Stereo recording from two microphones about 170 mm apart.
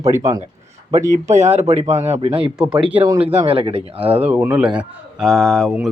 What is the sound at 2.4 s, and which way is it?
Speech, 5° right (ahead or behind).